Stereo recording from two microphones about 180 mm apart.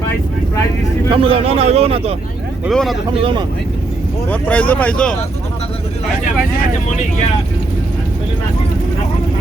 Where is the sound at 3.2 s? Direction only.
30° right (ahead or behind).